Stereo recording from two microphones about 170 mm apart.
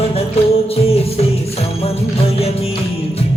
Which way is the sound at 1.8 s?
35° left (ahead or behind).